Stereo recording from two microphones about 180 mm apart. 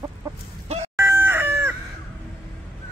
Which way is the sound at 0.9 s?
10° right (ahead or behind).